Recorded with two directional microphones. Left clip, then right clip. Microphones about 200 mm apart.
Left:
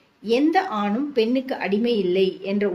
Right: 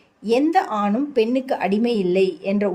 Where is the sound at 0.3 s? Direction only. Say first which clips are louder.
Right 2 dB; 55° right (ahead or behind).